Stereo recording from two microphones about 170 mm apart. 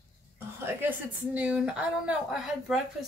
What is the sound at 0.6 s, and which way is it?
A woman's voice, 10° right (ahead or behind).